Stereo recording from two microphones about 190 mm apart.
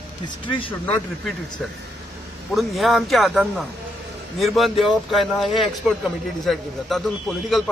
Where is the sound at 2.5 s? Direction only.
Centre (ahead or behind).